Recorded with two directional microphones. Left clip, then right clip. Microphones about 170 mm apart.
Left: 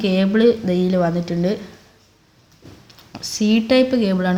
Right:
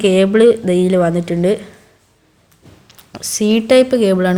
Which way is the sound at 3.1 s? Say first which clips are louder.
Right 4 dB; 40° right (ahead or behind).